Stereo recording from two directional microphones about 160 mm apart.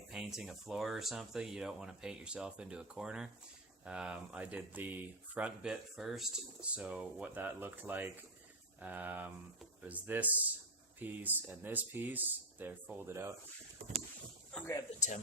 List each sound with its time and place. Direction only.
0.1 s speech: 5° right (ahead or behind)
14.5 s speech: 5° left (ahead or behind)
14.9 s speech: 50° left (ahead or behind)